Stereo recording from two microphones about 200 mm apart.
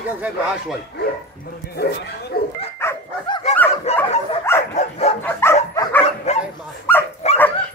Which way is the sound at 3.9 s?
30° left (ahead or behind).